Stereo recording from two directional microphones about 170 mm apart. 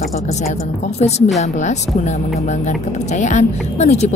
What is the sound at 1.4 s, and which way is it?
Speech, 45° left (ahead or behind).